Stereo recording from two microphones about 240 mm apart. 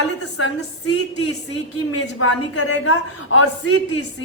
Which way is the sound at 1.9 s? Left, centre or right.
Left.